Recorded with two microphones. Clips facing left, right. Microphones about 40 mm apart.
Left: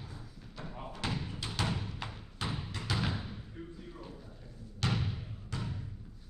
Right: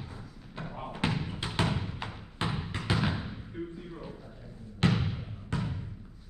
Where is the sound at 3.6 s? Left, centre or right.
Right.